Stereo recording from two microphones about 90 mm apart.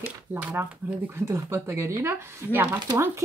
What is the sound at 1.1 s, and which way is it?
Speech, 30° right (ahead or behind).